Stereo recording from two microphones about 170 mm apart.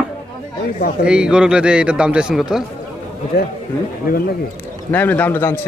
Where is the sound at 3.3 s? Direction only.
65° left (ahead or behind).